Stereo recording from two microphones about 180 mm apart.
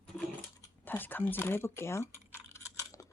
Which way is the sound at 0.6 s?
10° left (ahead or behind).